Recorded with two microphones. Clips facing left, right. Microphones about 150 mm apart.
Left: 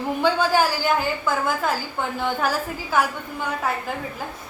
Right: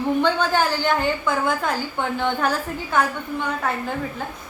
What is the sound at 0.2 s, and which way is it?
A woman's voice, 10° left (ahead or behind).